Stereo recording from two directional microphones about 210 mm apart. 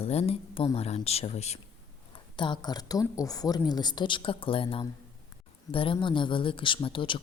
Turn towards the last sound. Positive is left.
turn(degrees=25)  # may be behind; listen again after turning